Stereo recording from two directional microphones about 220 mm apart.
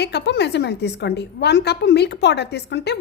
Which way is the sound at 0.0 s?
50° left (ahead or behind).